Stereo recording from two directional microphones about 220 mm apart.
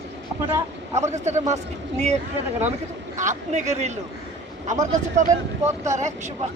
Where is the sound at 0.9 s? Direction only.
30° right (ahead or behind).